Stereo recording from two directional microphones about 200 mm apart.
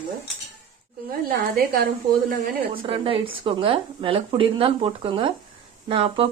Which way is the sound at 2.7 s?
25° right (ahead or behind).